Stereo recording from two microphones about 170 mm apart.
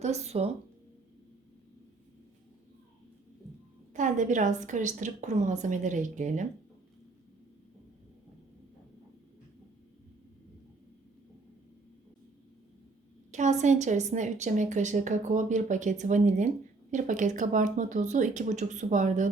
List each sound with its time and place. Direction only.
0.0 s a woman's voice: 40° right (ahead or behind)
3.9 s a woman's voice: 50° right (ahead or behind)
13.3 s a woman's voice: 45° right (ahead or behind)